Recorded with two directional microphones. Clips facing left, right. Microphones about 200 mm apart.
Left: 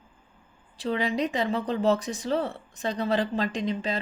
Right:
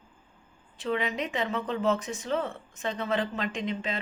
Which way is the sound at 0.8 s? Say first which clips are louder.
Left 3 dB; 35° left (ahead or behind).